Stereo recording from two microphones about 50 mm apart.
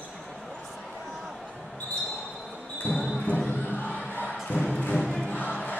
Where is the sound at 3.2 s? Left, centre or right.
Left.